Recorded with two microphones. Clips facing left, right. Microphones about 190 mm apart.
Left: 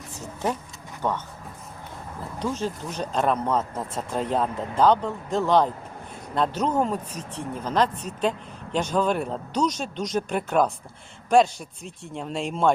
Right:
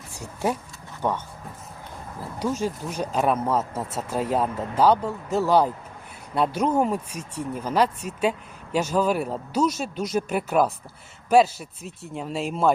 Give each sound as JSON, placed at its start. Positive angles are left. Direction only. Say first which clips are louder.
{"t": 1.0, "sound": "speech", "louder": "right 1 dB", "side_deg": -10}
{"t": 2.4, "sound": "a man's voice", "louder": "right 2 dB", "side_deg": -10}